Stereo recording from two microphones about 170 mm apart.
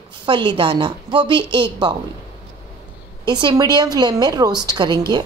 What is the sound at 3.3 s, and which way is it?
A woman's voice, 25° right (ahead or behind).